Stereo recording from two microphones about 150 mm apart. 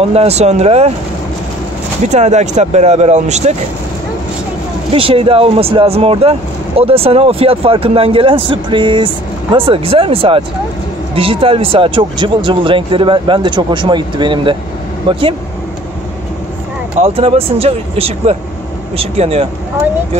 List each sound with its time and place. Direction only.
0.0 s speech: 40° right (ahead or behind)
2.0 s speech: 50° right (ahead or behind)
4.9 s speech: 35° right (ahead or behind)
17.0 s speech: 40° right (ahead or behind)